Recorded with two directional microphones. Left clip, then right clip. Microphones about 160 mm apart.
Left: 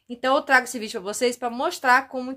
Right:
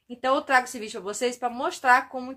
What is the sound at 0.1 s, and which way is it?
Speech, 45° left (ahead or behind).